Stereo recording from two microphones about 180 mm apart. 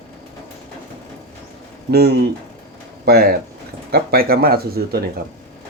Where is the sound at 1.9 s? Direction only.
60° right (ahead or behind).